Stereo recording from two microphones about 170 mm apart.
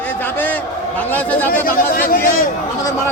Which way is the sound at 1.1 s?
10° left (ahead or behind).